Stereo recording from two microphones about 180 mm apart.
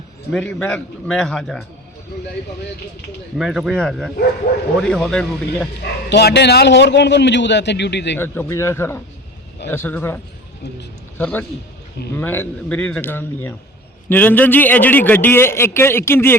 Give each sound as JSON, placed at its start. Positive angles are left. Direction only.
{"t": 0.3, "sound": "a man's voice", "side_deg": 5}
{"t": 3.3, "sound": "a man's voice", "side_deg": 0}
{"t": 4.5, "sound": "speech", "side_deg": 65}
{"t": 4.8, "sound": "a man's voice", "side_deg": 5}
{"t": 6.1, "sound": "a man's voice", "side_deg": 70}
{"t": 8.2, "sound": "a man's voice", "side_deg": 15}
{"t": 11.2, "sound": "a man's voice", "side_deg": 10}